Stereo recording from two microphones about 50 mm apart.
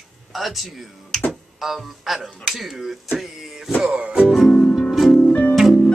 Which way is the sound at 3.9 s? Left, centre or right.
Right.